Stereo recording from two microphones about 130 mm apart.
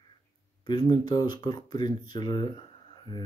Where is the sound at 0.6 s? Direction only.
35° left (ahead or behind).